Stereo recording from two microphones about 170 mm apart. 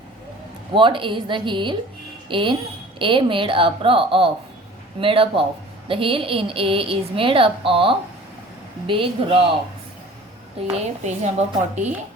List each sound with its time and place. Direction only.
0.7 s a woman's voice: 30° right (ahead or behind)
10.7 s a woman's voice: 40° right (ahead or behind)